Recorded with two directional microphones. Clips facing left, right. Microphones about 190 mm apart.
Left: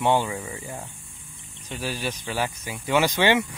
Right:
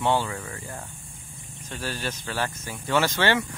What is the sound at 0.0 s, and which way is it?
Speech, 15° left (ahead or behind).